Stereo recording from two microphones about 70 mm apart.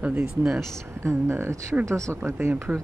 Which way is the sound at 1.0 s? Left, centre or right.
Right.